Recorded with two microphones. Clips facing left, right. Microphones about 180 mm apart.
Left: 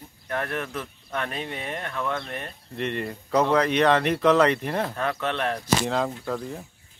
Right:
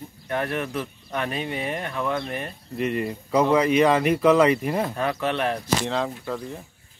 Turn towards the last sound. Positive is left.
turn(degrees=0)  # may be behind; listen again after turning